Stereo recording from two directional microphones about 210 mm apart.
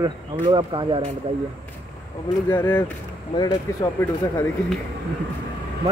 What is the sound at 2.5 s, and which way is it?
Speech, 10° left (ahead or behind).